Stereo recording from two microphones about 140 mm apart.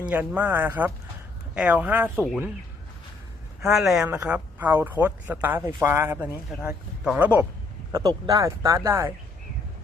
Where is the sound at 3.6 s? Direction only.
Centre (ahead or behind).